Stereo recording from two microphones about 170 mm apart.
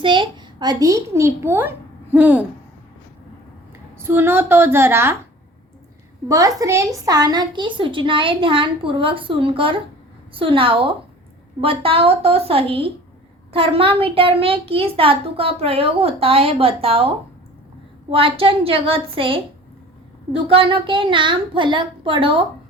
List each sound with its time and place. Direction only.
0.0 s a child's voice: 30° right (ahead or behind); by 2.5 s 10° right (ahead or behind)
4.0 s a woman's voice: 15° right (ahead or behind)
6.2 s a woman's voice: 20° right (ahead or behind); by 17.1 s 35° right (ahead or behind)
18.1 s a child's voice: 30° right (ahead or behind)